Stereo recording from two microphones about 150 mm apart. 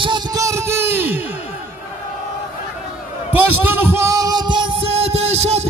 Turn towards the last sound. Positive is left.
turn(degrees=-45)  # may be behind; listen again after turning